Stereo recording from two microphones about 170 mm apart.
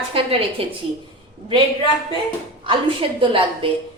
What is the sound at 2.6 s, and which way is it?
A woman's voice, 30° right (ahead or behind).